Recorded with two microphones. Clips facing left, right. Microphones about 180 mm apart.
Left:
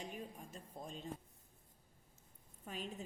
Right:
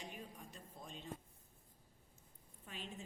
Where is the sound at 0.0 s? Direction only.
45° left (ahead or behind).